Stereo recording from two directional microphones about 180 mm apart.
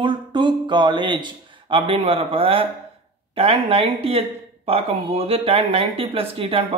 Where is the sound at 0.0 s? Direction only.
25° right (ahead or behind).